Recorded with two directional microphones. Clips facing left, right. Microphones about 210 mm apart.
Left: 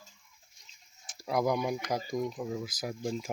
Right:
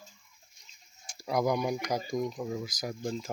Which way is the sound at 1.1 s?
Centre (ahead or behind).